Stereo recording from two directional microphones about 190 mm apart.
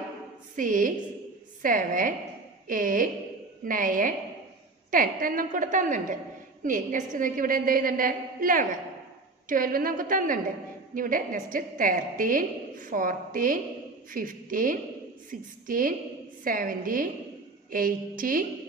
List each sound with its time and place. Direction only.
0.6 s a woman's voice: 45° right (ahead or behind)